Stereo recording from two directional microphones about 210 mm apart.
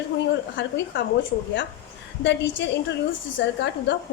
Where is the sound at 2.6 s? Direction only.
55° left (ahead or behind).